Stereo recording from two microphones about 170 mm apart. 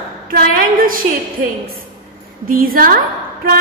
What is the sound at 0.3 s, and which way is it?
A woman's voice, 60° right (ahead or behind).